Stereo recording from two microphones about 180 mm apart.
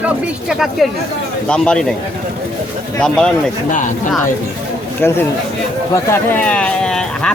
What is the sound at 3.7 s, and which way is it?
Speech, 45° left (ahead or behind).